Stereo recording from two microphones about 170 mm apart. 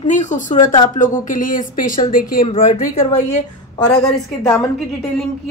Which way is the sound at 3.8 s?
20° left (ahead or behind).